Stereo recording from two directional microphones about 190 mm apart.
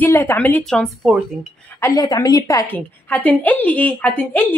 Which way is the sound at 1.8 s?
20° left (ahead or behind).